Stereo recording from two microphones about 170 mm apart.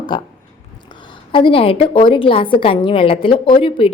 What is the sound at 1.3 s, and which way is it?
A woman's voice, 30° left (ahead or behind).